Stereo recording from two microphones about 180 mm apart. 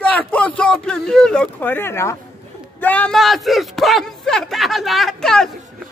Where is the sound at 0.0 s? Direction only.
10° left (ahead or behind).